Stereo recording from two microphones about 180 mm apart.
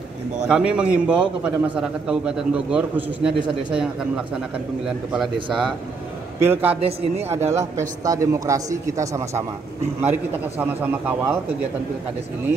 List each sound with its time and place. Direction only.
0.5 s a man's voice: 5° right (ahead or behind)